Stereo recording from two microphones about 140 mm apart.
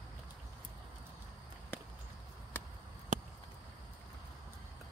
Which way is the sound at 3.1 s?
60° right (ahead or behind).